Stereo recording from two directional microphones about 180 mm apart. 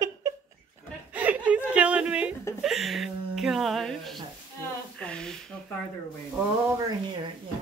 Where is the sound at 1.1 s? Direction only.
10° right (ahead or behind).